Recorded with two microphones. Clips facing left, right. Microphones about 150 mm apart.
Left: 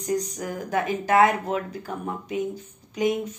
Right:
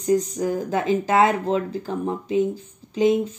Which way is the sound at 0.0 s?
25° right (ahead or behind).